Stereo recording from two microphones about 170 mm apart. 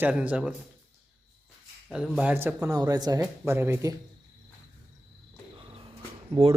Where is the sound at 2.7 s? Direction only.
20° right (ahead or behind).